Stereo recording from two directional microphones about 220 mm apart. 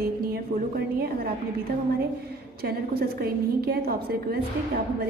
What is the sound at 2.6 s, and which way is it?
A woman's voice, 45° right (ahead or behind).